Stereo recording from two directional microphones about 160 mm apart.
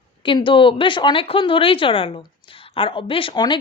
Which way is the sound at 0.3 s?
30° left (ahead or behind).